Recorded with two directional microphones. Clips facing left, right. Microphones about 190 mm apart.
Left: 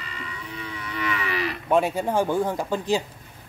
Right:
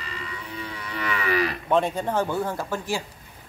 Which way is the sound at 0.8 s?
40° right (ahead or behind).